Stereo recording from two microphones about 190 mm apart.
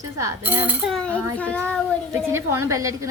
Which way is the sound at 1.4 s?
5° left (ahead or behind).